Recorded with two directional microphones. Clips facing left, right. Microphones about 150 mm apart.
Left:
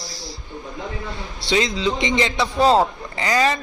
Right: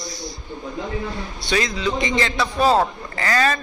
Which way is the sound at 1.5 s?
25° left (ahead or behind).